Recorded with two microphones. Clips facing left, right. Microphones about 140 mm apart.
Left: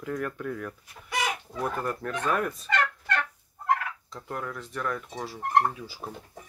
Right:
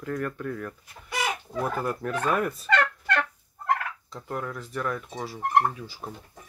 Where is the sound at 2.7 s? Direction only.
85° right.